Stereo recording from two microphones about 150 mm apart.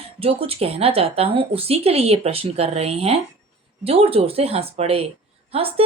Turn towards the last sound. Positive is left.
turn(degrees=-40)  # may be behind; listen again after turning